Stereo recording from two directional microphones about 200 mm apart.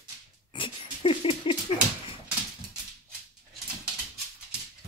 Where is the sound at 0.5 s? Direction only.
25° left (ahead or behind).